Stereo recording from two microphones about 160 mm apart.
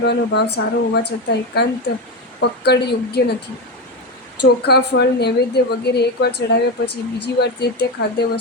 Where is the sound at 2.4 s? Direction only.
90° left.